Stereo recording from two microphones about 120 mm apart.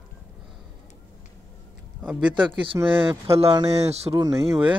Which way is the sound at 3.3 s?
20° right (ahead or behind).